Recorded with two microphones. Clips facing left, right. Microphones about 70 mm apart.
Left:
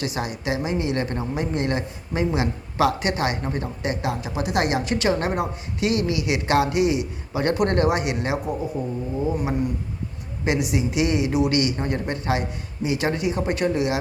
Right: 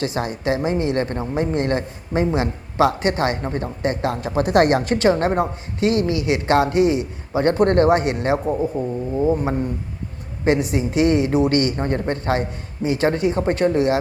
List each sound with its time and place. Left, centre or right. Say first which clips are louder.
0.0 s a woman's voice: right 4 dB; right